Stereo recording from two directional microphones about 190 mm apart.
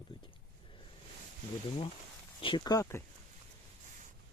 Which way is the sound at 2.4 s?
25° left (ahead or behind).